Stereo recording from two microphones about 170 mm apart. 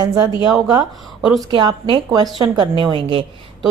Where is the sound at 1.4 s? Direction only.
30° right (ahead or behind).